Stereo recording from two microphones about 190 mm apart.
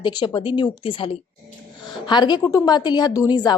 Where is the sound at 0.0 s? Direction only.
25° left (ahead or behind).